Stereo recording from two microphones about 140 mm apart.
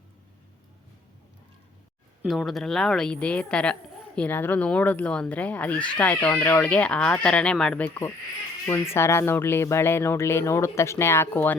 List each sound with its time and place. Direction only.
2.2 s speech: centre (ahead or behind)
8.6 s speech: 15° left (ahead or behind)